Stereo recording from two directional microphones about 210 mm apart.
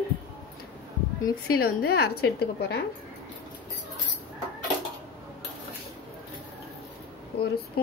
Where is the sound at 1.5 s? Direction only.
45° left (ahead or behind).